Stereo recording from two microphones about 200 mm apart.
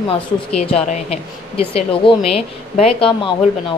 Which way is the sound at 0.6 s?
30° left (ahead or behind).